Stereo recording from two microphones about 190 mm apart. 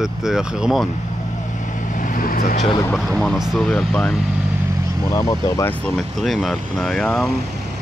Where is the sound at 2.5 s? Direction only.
30° left (ahead or behind).